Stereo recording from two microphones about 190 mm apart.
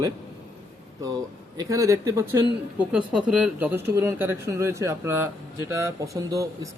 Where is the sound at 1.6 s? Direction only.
15° right (ahead or behind).